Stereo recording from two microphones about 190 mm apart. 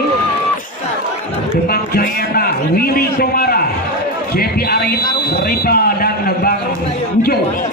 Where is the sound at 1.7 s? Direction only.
50° left (ahead or behind).